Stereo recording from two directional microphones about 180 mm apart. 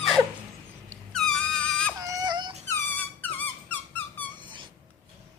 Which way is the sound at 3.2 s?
10° left (ahead or behind).